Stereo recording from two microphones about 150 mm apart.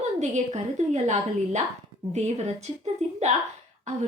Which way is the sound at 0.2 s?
50° right (ahead or behind).